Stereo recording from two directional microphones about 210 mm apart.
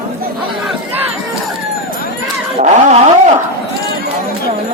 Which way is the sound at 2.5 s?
30° right (ahead or behind).